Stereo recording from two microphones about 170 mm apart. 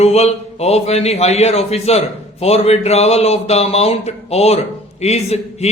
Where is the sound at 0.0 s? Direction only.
40° left (ahead or behind).